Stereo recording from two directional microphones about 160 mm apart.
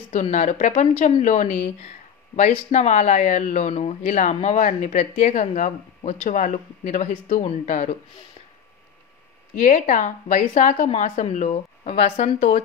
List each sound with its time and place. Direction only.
0.1 s speech: 50° left (ahead or behind)
9.6 s speech: 55° left (ahead or behind)